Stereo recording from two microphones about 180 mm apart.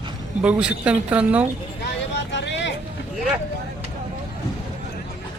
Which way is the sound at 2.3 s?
75° left (ahead or behind).